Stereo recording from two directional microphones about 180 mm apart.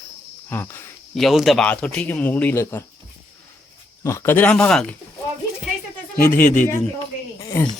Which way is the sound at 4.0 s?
15° left (ahead or behind).